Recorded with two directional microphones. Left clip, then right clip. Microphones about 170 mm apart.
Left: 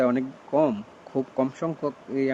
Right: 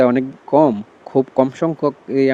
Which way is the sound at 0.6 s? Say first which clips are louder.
Right 9 dB; 30° right (ahead or behind).